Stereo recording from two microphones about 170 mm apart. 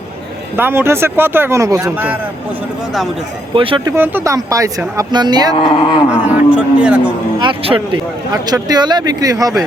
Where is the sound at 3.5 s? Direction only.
30° right (ahead or behind).